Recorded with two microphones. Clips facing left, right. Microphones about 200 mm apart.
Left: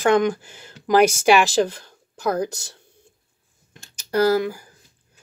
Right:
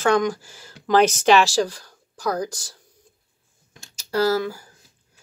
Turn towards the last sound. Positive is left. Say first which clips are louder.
# left 2 dB
turn(degrees=15)  # may be behind; listen again after turning